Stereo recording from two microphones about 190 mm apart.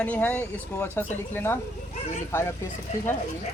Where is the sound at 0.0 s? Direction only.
10° left (ahead or behind).